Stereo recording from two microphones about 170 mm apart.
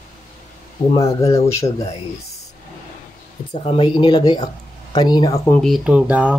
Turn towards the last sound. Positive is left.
turn(degrees=-10)  # may be behind; listen again after turning